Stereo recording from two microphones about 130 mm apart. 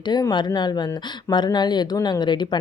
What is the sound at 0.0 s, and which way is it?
Speech, 35° left (ahead or behind).